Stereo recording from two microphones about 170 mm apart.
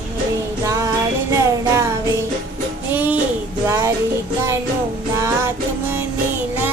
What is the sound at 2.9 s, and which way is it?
Music, 10° right (ahead or behind).